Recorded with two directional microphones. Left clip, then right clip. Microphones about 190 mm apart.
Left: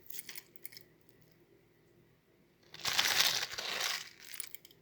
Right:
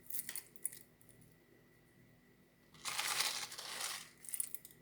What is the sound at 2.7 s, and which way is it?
Crushing, 50° left (ahead or behind).